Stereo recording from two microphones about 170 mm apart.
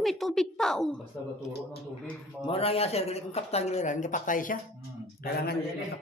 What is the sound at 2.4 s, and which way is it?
Speech, 35° left (ahead or behind).